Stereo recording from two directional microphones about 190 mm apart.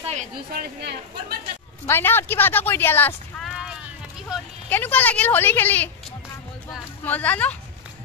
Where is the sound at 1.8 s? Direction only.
10° left (ahead or behind).